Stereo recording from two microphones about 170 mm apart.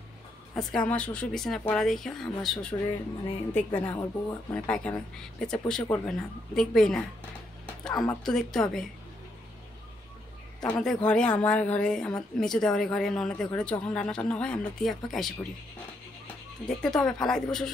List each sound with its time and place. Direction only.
0.6 s a woman's voice: 5° left (ahead or behind)
7.9 s speech: 20° left (ahead or behind)
8.2 s a woman's voice: centre (ahead or behind)
10.6 s a woman's voice: 5° left (ahead or behind)
16.6 s a woman's voice: 5° left (ahead or behind)